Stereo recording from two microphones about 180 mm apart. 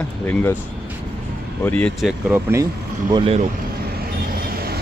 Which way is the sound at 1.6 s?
5° left (ahead or behind).